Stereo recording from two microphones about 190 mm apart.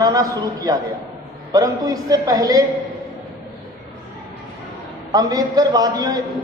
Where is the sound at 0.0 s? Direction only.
20° right (ahead or behind).